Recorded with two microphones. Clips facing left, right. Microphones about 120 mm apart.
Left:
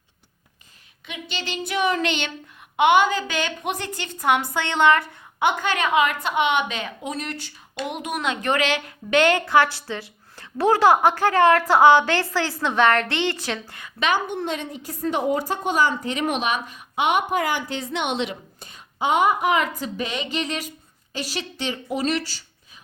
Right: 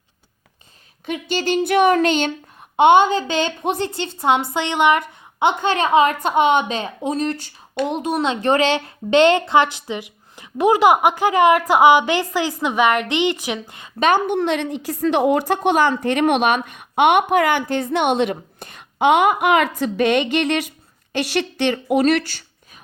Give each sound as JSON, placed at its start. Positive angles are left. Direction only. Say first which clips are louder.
{"t": 1.0, "sound": "child singing", "louder": "right 11 dB", "side_deg": -45}
{"t": 2.7, "sound": "a woman's voice", "louder": "right 5 dB", "side_deg": -30}
{"t": 14.3, "sound": "a woman's voice", "louder": "right 8 dB", "side_deg": -80}